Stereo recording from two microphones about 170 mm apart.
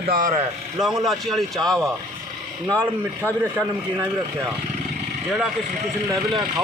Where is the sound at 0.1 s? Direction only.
50° right (ahead or behind).